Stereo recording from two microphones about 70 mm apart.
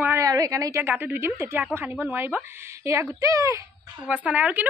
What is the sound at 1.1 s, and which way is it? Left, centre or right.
Speech, right.